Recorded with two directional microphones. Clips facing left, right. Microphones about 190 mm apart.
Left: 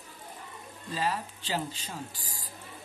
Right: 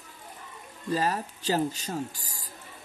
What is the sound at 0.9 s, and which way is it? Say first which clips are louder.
Speech: right 4 dB; 45° right (ahead or behind).